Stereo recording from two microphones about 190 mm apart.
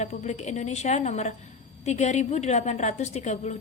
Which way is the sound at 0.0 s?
35° left (ahead or behind).